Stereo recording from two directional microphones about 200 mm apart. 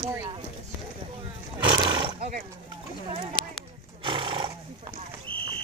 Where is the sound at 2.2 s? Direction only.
40° right (ahead or behind).